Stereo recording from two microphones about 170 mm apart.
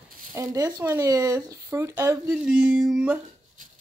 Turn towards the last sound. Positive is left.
turn(degrees=-5)  # may be behind; listen again after turning